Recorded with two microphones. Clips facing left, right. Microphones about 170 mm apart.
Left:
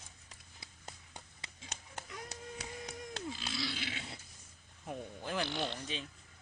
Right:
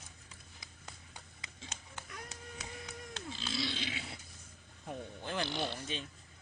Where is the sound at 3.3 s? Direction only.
25° right (ahead or behind).